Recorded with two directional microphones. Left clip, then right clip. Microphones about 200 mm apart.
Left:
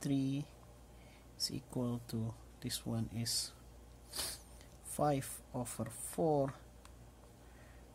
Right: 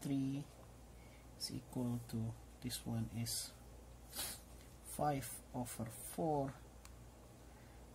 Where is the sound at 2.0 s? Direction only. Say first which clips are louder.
Left 3 dB; 35° left (ahead or behind).